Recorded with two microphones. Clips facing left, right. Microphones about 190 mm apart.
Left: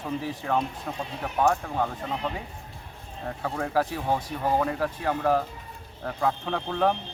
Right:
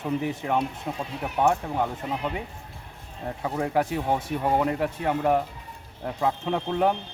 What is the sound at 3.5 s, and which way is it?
Speech, 20° right (ahead or behind).